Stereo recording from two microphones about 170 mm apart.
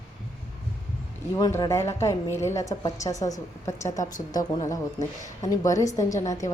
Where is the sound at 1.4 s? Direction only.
20° left (ahead or behind).